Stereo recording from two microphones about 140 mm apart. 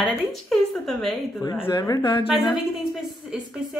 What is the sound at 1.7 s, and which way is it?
Speech, 25° left (ahead or behind).